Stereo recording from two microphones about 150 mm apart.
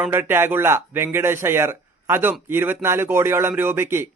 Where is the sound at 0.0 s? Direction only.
15° right (ahead or behind).